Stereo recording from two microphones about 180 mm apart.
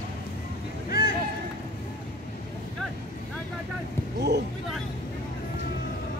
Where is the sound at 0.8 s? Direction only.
55° left (ahead or behind).